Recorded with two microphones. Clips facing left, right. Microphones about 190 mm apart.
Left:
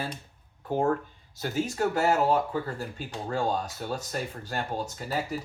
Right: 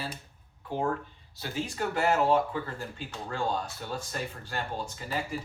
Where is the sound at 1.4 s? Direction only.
45° left (ahead or behind).